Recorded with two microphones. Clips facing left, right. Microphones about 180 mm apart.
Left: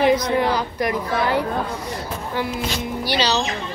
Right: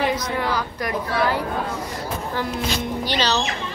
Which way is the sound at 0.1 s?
15° left (ahead or behind).